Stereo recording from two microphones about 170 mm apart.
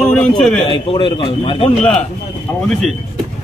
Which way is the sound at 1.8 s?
5° left (ahead or behind).